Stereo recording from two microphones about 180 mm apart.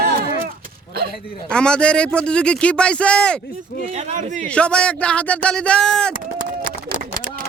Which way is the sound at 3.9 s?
45° right (ahead or behind).